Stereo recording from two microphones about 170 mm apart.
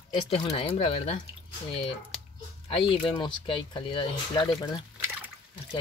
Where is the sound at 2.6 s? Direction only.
30° left (ahead or behind).